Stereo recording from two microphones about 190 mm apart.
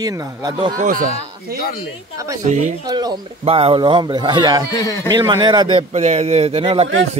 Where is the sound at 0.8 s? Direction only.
45° right (ahead or behind).